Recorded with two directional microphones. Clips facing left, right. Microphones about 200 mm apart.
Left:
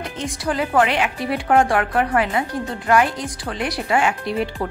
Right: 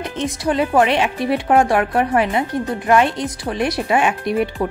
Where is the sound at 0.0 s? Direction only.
20° right (ahead or behind).